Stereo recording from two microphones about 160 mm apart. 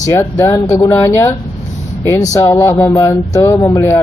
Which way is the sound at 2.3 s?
20° left (ahead or behind).